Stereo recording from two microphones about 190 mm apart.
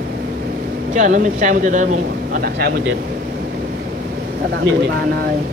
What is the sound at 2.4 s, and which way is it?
Speech, 60° right (ahead or behind).